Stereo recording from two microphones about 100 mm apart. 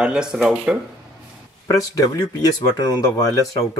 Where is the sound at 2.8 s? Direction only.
35° left (ahead or behind).